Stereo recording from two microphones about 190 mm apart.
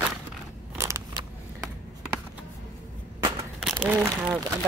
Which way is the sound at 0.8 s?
15° right (ahead or behind).